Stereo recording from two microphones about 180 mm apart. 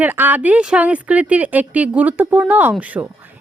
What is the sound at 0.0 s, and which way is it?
Speech, 10° right (ahead or behind).